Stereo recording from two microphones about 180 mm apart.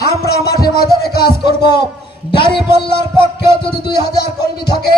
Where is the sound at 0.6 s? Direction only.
60° left (ahead or behind).